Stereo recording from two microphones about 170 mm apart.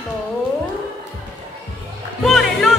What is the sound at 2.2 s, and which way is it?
Music, centre (ahead or behind).